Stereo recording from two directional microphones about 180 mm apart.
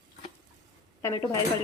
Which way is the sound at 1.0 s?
15° left (ahead or behind).